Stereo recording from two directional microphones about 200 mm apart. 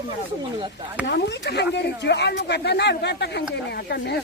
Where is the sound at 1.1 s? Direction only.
60° left (ahead or behind).